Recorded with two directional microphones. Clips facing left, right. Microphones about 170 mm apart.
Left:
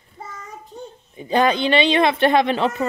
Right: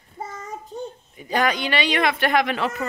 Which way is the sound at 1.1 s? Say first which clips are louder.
Left 5 dB; 25° left (ahead or behind).